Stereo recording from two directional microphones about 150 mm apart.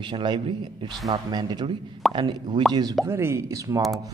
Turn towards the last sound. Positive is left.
turn(degrees=-20)  # may be behind; listen again after turning